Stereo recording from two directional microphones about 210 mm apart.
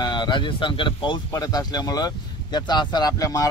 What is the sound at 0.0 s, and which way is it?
Speech, 20° left (ahead or behind).